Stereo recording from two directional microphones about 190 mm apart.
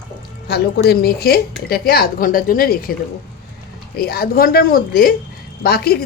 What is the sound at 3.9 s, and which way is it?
Speech, 55° left (ahead or behind).